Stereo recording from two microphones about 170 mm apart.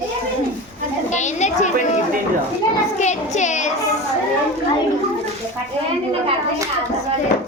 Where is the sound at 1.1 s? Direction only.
45° left (ahead or behind).